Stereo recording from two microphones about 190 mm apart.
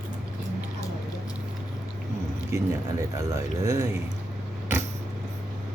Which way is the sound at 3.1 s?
15° right (ahead or behind).